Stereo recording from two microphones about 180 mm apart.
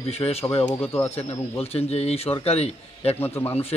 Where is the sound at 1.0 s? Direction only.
35° left (ahead or behind).